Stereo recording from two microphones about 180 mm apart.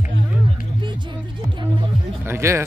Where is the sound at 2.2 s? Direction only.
15° right (ahead or behind).